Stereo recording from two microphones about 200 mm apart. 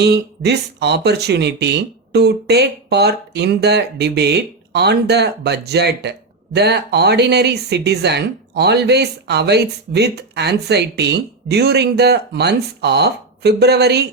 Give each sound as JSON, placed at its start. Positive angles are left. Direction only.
{"t": 0.0, "sound": "speech", "side_deg": -55}